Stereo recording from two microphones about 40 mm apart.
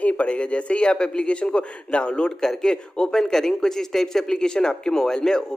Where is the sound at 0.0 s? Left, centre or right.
Left.